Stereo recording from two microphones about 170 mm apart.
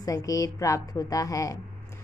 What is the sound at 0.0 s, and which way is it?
A woman's voice, 20° left (ahead or behind).